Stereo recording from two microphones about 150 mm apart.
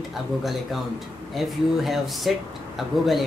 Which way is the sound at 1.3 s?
Centre (ahead or behind).